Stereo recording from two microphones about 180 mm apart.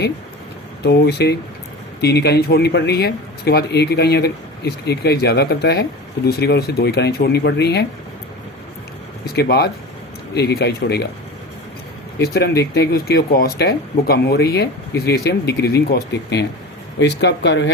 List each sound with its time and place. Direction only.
0.8 s speech: 65° left (ahead or behind)
9.2 s speech: 60° left (ahead or behind)
12.2 s speech: 60° left (ahead or behind)